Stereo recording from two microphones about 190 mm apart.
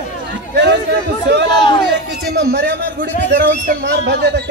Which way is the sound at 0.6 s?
65° right (ahead or behind).